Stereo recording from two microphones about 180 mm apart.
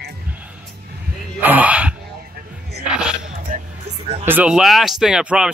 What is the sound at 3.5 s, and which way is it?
Music, 50° right (ahead or behind).